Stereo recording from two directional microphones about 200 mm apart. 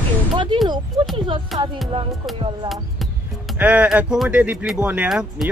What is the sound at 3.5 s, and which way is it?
Speech, 10° right (ahead or behind).